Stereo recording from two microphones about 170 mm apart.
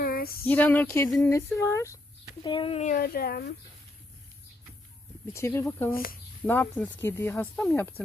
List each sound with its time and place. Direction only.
0.0 s female singing: 60° left (ahead or behind)
0.4 s speech: 10° left (ahead or behind)
2.4 s speech: 30° left (ahead or behind)
2.8 s speech: 55° left (ahead or behind)
5.3 s speech: 15° left (ahead or behind)
5.9 s speech: 60° left (ahead or behind)
6.4 s speech: 10° left (ahead or behind)